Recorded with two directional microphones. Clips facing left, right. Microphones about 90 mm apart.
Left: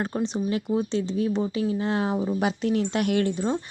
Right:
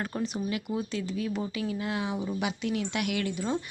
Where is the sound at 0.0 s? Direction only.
25° left (ahead or behind).